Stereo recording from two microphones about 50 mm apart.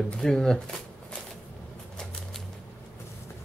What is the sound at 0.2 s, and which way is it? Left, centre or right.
Speech, centre.